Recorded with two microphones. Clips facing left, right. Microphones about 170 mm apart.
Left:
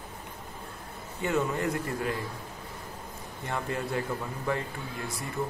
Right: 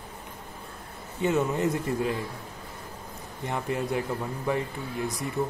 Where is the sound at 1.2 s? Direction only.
20° right (ahead or behind).